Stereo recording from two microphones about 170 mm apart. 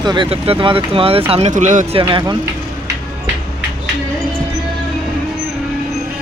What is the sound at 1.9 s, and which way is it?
Speech, 25° right (ahead or behind).